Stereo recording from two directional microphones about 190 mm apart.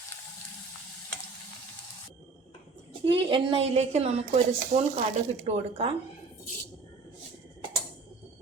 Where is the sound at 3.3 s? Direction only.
30° right (ahead or behind).